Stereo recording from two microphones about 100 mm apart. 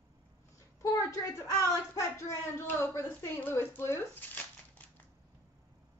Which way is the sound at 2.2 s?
30° left (ahead or behind).